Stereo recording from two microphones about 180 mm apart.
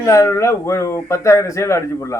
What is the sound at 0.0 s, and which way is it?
Speech, 15° left (ahead or behind).